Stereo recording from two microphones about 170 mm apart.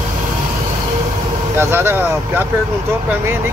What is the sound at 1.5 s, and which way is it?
Speech, 15° right (ahead or behind).